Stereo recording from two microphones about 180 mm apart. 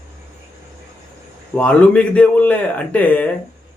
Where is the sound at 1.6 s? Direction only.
5° left (ahead or behind).